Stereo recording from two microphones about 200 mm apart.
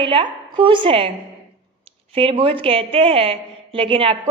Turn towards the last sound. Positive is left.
turn(degrees=-25)  # may be behind; listen again after turning